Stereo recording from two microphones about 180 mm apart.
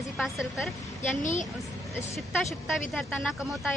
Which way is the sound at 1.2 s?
45° left (ahead or behind).